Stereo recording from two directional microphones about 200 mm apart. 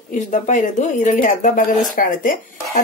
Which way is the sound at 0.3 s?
40° left (ahead or behind).